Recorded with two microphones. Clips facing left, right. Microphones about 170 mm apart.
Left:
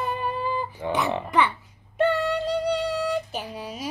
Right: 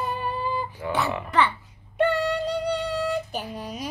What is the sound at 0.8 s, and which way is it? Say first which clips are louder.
Speech: left 2 dB; 20° left (ahead or behind).